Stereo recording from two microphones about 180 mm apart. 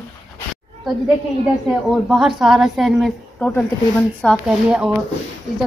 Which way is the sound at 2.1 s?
Centre (ahead or behind).